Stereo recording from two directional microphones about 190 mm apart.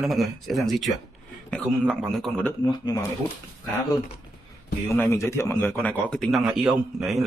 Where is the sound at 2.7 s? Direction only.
20° left (ahead or behind).